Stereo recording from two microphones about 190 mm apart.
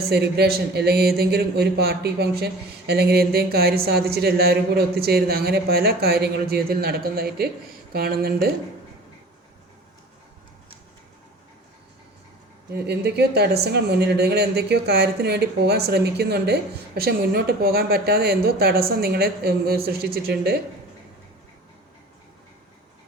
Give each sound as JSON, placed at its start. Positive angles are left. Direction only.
{"t": 0.0, "sound": "speech", "side_deg": -55}
{"t": 12.7, "sound": "speech", "side_deg": -60}